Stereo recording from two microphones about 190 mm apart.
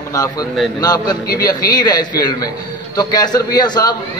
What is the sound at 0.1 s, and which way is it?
A man's voice, 20° left (ahead or behind).